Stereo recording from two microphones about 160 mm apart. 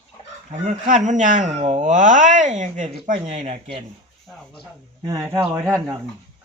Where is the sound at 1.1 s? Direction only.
50° right (ahead or behind).